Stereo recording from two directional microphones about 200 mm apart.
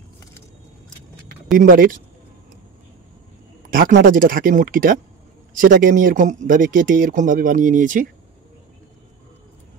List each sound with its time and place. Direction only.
1.5 s speech: 45° right (ahead or behind)
3.7 s speech: 45° right (ahead or behind)